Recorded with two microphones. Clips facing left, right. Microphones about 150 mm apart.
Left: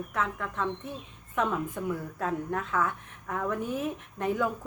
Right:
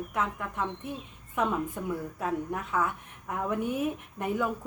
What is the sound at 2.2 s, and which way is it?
A woman's voice, 10° right (ahead or behind).